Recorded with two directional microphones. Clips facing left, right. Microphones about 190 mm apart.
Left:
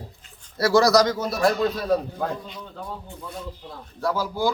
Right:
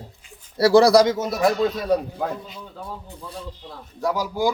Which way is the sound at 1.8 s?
5° right (ahead or behind).